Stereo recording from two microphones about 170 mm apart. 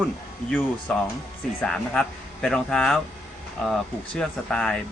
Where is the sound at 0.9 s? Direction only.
5° left (ahead or behind).